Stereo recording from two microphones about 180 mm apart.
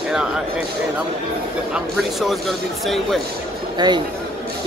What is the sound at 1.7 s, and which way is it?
Speech, centre (ahead or behind).